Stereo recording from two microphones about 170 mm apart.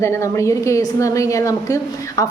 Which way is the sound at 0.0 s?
15° left (ahead or behind).